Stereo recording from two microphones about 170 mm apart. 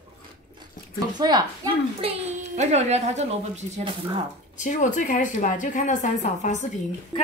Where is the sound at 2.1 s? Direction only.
40° right (ahead or behind).